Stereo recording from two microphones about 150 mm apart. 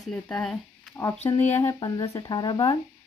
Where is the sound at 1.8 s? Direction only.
25° left (ahead or behind).